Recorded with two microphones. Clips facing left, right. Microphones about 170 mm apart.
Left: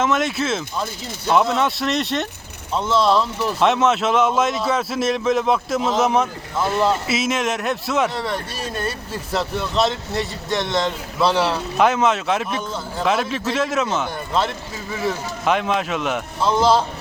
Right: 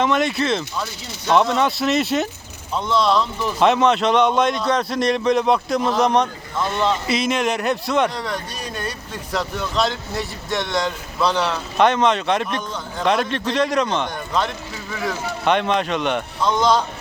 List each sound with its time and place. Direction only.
0.0 s speech: centre (ahead or behind)
11.3 s speech: 30° left (ahead or behind)
11.8 s speech: 5° left (ahead or behind)